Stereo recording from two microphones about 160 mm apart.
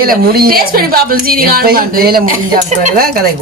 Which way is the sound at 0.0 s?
70° right (ahead or behind).